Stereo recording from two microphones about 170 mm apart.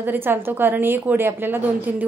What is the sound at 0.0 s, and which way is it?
A woman's voice, 10° right (ahead or behind).